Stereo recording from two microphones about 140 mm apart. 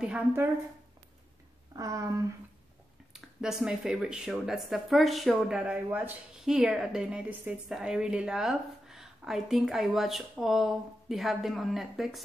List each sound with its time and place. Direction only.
1.8 s speech: 25° right (ahead or behind)
3.1 s speech: 5° right (ahead or behind)